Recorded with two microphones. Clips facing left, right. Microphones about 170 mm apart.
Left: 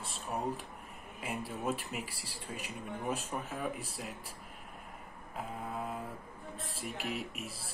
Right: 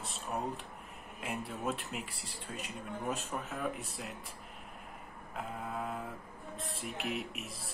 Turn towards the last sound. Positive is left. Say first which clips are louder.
# left 1 dB
turn(degrees=0)  # may be behind; listen again after turning